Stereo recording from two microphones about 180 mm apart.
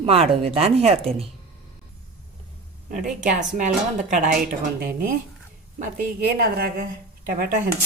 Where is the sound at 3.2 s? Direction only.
45° right (ahead or behind).